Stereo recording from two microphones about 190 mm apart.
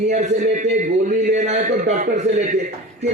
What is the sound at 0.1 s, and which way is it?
A man's voice, 40° right (ahead or behind).